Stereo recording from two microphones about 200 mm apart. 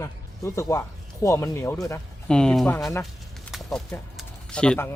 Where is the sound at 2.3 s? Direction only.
5° left (ahead or behind).